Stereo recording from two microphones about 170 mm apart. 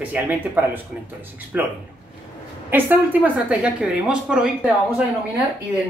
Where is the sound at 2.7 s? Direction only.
10° right (ahead or behind).